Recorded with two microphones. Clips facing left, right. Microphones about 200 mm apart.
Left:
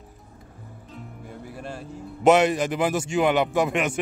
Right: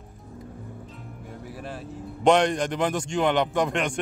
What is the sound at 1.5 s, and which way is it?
A man's voice, centre (ahead or behind).